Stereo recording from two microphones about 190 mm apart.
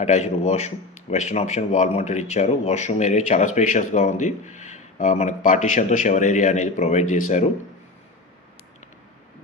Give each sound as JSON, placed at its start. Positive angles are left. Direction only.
{"t": 0.0, "sound": "speech", "side_deg": 35}